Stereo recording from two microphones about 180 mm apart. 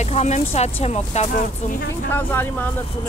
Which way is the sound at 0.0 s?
40° left (ahead or behind).